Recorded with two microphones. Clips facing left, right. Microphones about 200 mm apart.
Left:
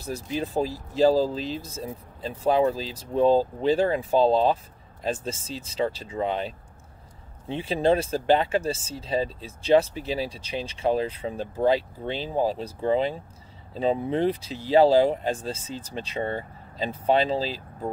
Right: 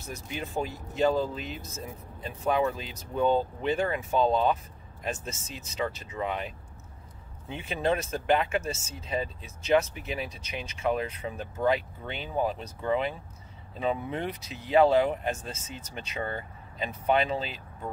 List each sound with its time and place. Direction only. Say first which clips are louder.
0.0 s speech: left 7 dB; 35° left (ahead or behind)